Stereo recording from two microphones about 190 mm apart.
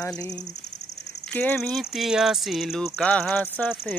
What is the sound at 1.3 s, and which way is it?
Speech, 5° left (ahead or behind).